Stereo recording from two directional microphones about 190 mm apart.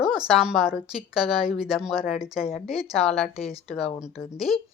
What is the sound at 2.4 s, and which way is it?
Speech, 30° left (ahead or behind).